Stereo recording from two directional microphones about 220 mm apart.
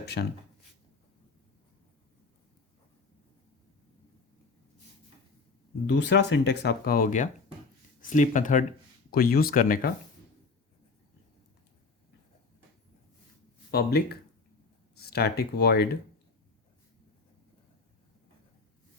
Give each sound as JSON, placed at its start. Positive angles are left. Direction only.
{"t": 0.0, "sound": "speech", "side_deg": 50}
{"t": 5.8, "sound": "speech", "side_deg": 50}
{"t": 13.7, "sound": "speech", "side_deg": 45}